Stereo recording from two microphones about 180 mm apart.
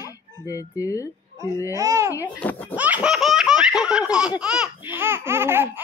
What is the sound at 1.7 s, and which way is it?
Babbling, 15° right (ahead or behind).